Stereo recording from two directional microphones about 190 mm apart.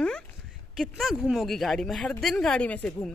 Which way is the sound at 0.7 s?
Centre (ahead or behind).